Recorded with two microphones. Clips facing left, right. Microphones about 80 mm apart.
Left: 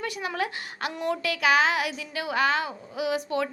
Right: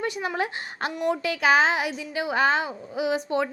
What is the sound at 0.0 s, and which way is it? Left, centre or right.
A woman's voice, right.